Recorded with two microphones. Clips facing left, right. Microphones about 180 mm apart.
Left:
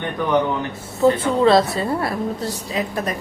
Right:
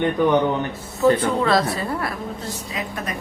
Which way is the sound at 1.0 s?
25° left (ahead or behind).